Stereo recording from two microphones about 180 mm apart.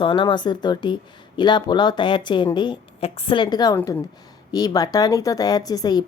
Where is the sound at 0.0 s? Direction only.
25° left (ahead or behind).